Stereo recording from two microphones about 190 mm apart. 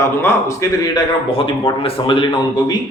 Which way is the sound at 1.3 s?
30° left (ahead or behind).